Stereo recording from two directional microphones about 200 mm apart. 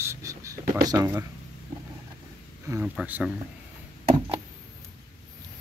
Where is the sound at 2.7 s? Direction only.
5° right (ahead or behind).